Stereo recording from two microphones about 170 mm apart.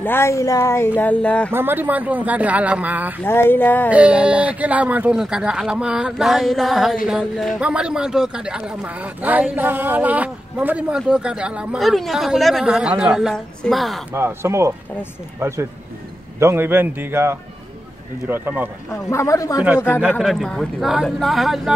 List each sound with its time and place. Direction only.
0.0 s speech: 15° left (ahead or behind)
1.5 s speech: 10° right (ahead or behind)
3.3 s speech: 10° left (ahead or behind)
3.9 s a man's voice: 5° right (ahead or behind)
14.1 s speech: 15° right (ahead or behind)
19.0 s a man's voice: 15° left (ahead or behind)
20.2 s a man's voice: centre (ahead or behind)